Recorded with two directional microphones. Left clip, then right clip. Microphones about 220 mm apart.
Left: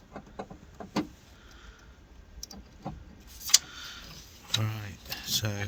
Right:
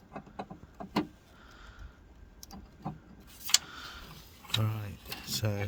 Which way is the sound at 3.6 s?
45° right (ahead or behind).